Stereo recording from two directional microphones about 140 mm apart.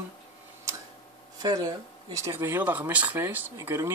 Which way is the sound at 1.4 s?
25° right (ahead or behind).